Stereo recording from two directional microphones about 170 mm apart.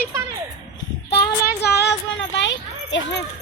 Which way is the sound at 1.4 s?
75° left (ahead or behind).